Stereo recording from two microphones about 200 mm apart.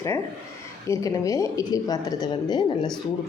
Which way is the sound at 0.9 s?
15° left (ahead or behind).